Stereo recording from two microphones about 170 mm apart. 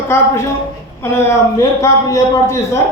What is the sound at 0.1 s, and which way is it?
A man's voice, 15° left (ahead or behind).